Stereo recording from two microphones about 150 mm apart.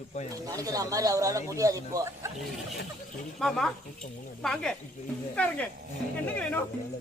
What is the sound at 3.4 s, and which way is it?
Speech, 5° left (ahead or behind).